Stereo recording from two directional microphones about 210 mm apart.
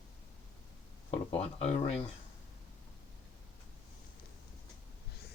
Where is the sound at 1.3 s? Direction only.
30° left (ahead or behind).